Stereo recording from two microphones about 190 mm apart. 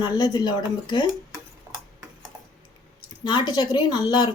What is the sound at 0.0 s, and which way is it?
A woman's voice, 20° left (ahead or behind).